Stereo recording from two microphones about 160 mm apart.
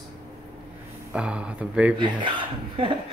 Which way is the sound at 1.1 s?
5° right (ahead or behind).